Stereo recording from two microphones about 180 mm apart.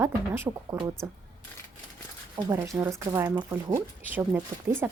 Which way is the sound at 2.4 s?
15° right (ahead or behind).